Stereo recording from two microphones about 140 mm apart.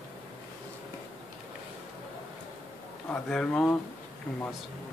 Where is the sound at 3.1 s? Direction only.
10° left (ahead or behind).